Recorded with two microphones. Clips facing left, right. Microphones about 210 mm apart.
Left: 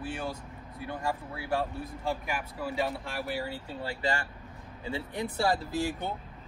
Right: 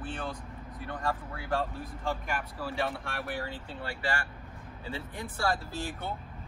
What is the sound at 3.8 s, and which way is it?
Speech, 20° left (ahead or behind).